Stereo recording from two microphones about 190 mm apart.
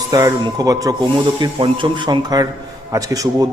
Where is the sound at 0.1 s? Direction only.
20° right (ahead or behind).